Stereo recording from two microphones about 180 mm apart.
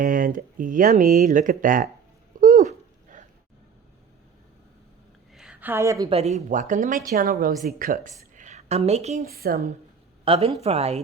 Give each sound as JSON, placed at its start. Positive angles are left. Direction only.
{"t": 0.0, "sound": "speech", "side_deg": -50}
{"t": 2.4, "sound": "a sound", "side_deg": -45}
{"t": 5.3, "sound": "a sound", "side_deg": -5}
{"t": 6.1, "sound": "speech", "side_deg": -35}
{"t": 9.2, "sound": "a woman's voice", "side_deg": -55}
{"t": 10.2, "sound": "speech", "side_deg": -35}